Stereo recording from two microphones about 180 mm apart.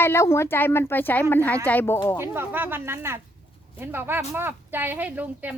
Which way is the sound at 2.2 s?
10° right (ahead or behind).